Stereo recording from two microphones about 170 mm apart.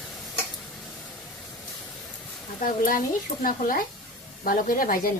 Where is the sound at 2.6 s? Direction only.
55° left (ahead or behind).